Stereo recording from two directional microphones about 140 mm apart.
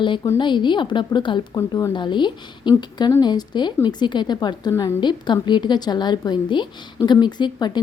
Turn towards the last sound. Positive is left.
turn(degrees=30)  # may be behind; listen again after turning